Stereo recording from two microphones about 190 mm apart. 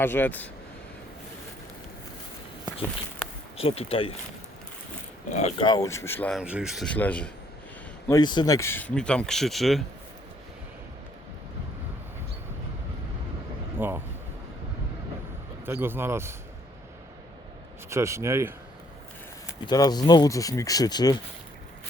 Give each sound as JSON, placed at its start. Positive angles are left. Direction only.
{"t": 0.0, "sound": "speech", "side_deg": 10}
{"t": 2.7, "sound": "a sound", "side_deg": -20}
{"t": 3.6, "sound": "speech", "side_deg": 30}
{"t": 5.3, "sound": "speech", "side_deg": 35}
{"t": 5.6, "sound": "speech", "side_deg": 20}
{"t": 6.4, "sound": "speech", "side_deg": -5}
{"t": 8.0, "sound": "speech", "side_deg": 20}
{"t": 13.7, "sound": "vehicle", "side_deg": -10}
{"t": 15.6, "sound": "speech", "side_deg": -10}
{"t": 17.8, "sound": "speech", "side_deg": -15}
{"t": 19.6, "sound": "speech", "side_deg": 20}